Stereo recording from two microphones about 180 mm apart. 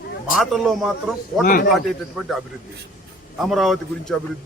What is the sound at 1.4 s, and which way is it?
Speech, 50° left (ahead or behind).